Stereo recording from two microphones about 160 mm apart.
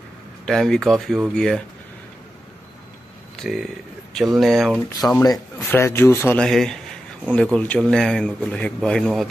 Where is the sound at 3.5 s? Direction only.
Centre (ahead or behind).